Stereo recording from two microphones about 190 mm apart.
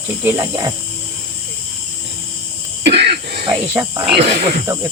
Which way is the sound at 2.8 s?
65° right (ahead or behind).